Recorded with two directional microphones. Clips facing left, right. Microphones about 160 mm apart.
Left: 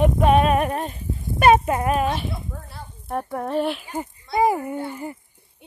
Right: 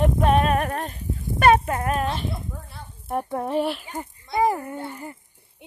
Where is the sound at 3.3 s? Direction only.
15° right (ahead or behind).